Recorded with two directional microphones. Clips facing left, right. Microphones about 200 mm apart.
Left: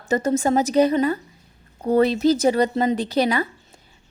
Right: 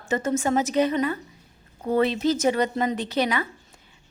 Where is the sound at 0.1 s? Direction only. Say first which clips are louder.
Left 4 dB; 35° left (ahead or behind).